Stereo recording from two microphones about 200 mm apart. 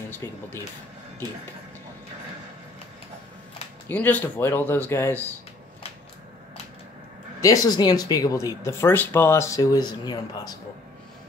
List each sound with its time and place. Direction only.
0.1 s speech: 10° left (ahead or behind)
3.9 s speech: 10° left (ahead or behind)
7.4 s speech: 20° left (ahead or behind)